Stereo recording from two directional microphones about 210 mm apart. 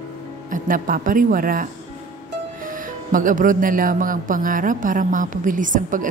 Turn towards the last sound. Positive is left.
turn(degrees=-40)  # may be behind; listen again after turning